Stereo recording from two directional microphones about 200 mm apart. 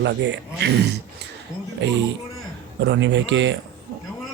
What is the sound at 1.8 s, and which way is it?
Speech, 60° right (ahead or behind).